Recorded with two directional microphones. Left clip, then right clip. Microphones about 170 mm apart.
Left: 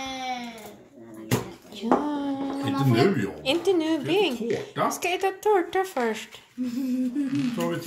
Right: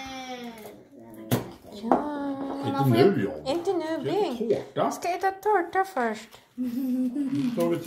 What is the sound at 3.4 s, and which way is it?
Speech, 20° left (ahead or behind).